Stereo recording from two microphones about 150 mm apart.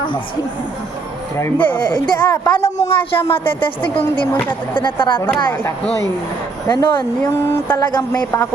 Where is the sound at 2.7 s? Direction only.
45° left (ahead or behind).